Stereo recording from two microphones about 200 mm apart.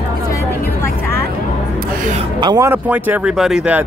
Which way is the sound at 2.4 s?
20° right (ahead or behind).